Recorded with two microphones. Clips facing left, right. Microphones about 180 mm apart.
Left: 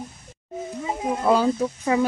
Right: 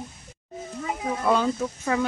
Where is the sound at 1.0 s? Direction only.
20° left (ahead or behind).